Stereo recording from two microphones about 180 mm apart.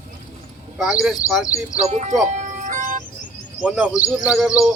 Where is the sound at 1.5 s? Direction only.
35° right (ahead or behind).